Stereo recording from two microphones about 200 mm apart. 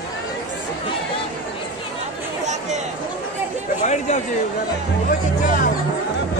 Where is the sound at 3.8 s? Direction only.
35° left (ahead or behind).